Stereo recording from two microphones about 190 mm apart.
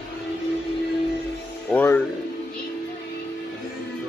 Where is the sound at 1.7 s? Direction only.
10° left (ahead or behind).